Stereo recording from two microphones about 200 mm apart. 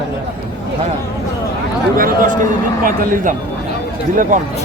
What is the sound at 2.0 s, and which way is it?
A man's voice, 45° right (ahead or behind).